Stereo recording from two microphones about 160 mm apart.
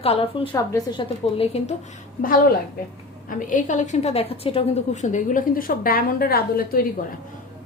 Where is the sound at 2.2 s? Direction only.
60° left (ahead or behind); by 4.6 s 40° left (ahead or behind).